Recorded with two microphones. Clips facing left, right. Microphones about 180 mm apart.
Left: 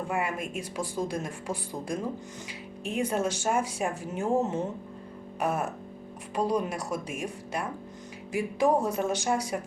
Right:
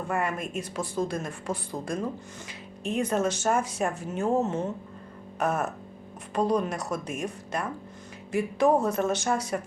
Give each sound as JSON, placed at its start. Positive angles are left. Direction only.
{"t": 0.1, "sound": "a woman's voice", "side_deg": 10}